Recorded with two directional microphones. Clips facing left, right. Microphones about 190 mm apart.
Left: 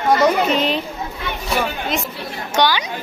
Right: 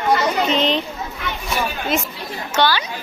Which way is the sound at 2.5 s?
15° left (ahead or behind).